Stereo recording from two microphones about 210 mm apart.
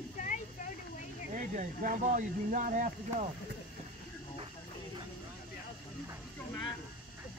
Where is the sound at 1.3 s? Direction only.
40° right (ahead or behind).